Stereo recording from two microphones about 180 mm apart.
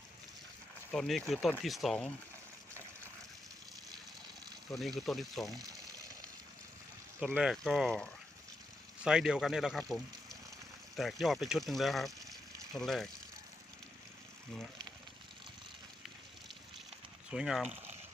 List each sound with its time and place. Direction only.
0.9 s speech: centre (ahead or behind)
4.7 s speech: centre (ahead or behind)
5.5 s water: 20° right (ahead or behind)
7.3 s speech: centre (ahead or behind)
10.9 s speech: centre (ahead or behind)
17.3 s speech: centre (ahead or behind)